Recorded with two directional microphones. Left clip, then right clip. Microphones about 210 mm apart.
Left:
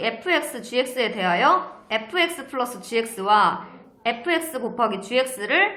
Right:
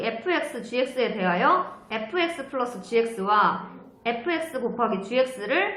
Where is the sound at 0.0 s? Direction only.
50° left (ahead or behind).